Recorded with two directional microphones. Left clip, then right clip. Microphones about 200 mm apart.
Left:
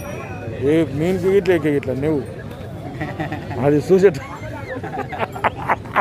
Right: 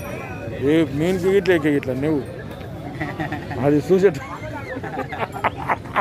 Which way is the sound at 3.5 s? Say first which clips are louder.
Left 2 dB; 5° left (ahead or behind).